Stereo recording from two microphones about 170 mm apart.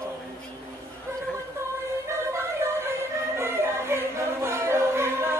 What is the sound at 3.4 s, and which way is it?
Music, 15° right (ahead or behind).